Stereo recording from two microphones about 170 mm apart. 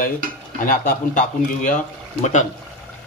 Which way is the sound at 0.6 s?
50° left (ahead or behind).